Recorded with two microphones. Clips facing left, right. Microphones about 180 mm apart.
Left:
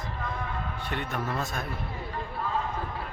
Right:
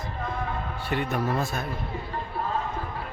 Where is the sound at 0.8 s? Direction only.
5° right (ahead or behind).